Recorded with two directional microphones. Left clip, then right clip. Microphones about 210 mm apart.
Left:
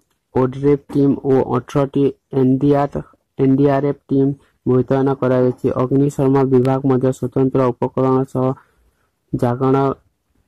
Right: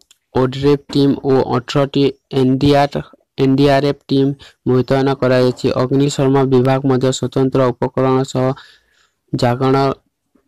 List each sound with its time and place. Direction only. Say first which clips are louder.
0.3 s speech: right 2 dB; 30° right (ahead or behind)